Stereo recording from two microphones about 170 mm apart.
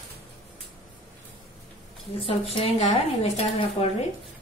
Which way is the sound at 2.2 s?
35° left (ahead or behind).